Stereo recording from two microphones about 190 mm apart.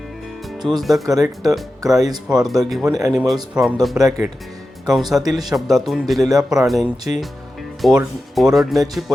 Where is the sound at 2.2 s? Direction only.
5° right (ahead or behind).